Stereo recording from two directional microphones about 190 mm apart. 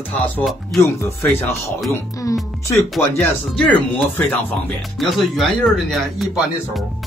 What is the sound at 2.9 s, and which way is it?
Speech, 10° left (ahead or behind).